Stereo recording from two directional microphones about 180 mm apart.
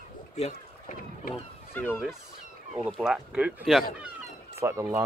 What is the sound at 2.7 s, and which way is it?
Speech, 5° right (ahead or behind).